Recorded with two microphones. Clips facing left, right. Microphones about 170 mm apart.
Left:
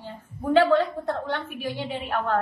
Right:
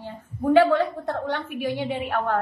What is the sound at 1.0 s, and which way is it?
A woman's voice, 15° right (ahead or behind).